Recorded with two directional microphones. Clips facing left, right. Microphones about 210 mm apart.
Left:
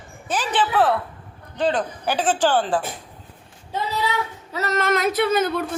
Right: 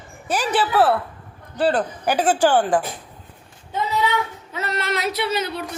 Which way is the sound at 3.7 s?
35° left (ahead or behind).